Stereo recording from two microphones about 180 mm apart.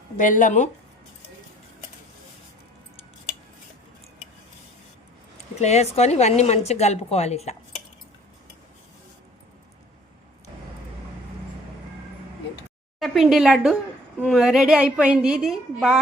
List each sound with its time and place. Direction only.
0.2 s speech: 45° left (ahead or behind)
5.5 s speech: 40° left (ahead or behind)
13.0 s a woman's voice: 5° right (ahead or behind)